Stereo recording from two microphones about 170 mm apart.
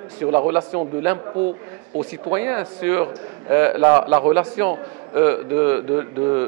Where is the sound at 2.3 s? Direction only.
15° right (ahead or behind).